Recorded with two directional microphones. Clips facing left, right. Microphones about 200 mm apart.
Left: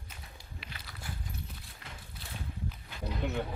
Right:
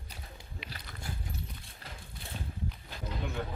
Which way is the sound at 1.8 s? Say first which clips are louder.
Right 1 dB; 35° right (ahead or behind).